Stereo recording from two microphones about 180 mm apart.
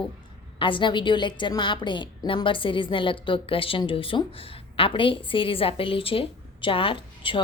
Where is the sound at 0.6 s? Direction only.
25° left (ahead or behind).